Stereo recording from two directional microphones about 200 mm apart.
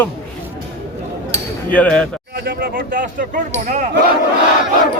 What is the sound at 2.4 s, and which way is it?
Speech, 50° right (ahead or behind).